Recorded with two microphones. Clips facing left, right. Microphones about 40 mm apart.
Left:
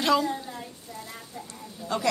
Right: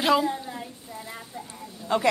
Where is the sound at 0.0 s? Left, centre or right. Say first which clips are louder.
Right 2 dB; centre.